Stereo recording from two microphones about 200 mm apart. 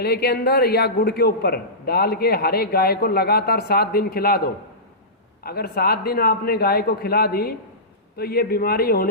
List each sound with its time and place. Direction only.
0.0 s a man's voice: 55° left (ahead or behind)